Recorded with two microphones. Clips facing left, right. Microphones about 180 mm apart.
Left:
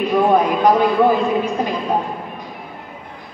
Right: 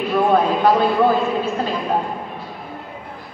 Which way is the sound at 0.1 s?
15° left (ahead or behind).